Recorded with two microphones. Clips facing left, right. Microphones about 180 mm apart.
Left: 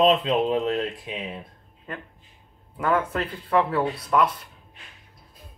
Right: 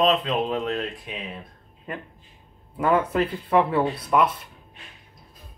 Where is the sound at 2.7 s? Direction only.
10° right (ahead or behind).